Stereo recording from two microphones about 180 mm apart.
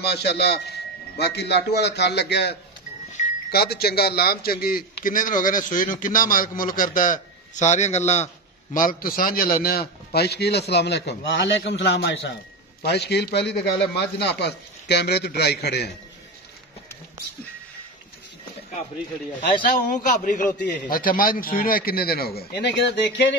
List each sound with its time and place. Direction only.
0.0 s a man's voice: 65° left (ahead or behind); by 8.3 s 40° left (ahead or behind)
8.7 s a man's voice: 50° left (ahead or behind)
19.9 s a man's voice: 45° left (ahead or behind); by 23.3 s 80° left